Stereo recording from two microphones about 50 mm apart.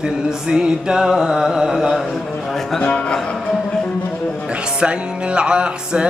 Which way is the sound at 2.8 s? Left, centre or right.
Centre.